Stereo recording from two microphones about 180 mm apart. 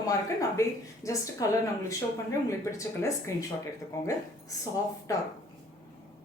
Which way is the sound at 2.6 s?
15° left (ahead or behind).